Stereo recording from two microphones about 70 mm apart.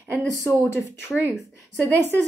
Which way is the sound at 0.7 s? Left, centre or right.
Left.